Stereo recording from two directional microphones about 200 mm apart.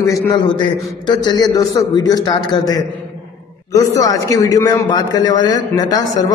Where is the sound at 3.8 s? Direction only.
15° left (ahead or behind).